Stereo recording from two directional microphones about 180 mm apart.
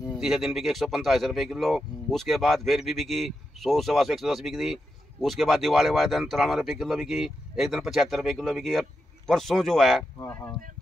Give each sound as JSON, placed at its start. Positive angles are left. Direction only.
{"t": 0.2, "sound": "speech", "side_deg": -5}